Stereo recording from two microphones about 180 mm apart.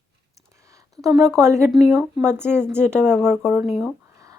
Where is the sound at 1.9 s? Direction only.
15° right (ahead or behind).